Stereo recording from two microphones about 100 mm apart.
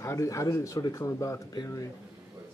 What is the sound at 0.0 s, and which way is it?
Speech, 30° left (ahead or behind).